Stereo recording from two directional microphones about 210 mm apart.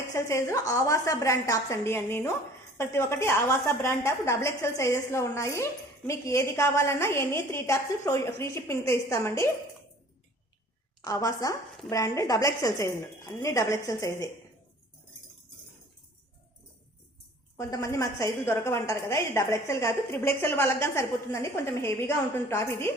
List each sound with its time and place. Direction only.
0.1 s a woman's voice: 15° left (ahead or behind)
11.0 s a woman's voice: 15° left (ahead or behind)
17.6 s a woman's voice: 15° left (ahead or behind)